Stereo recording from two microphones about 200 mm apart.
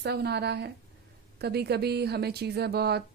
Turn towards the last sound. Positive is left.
turn(degrees=-55)  # may be behind; listen again after turning